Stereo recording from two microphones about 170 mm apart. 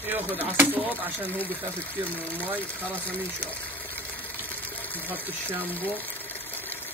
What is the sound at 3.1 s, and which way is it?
Water, 10° left (ahead or behind).